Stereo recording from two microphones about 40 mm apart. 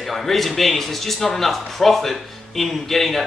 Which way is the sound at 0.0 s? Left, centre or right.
Centre.